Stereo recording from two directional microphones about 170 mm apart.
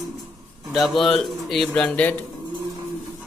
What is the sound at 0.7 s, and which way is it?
A man's voice, centre (ahead or behind).